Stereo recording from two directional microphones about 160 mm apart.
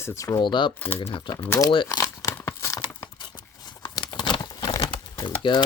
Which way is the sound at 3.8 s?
25° left (ahead or behind).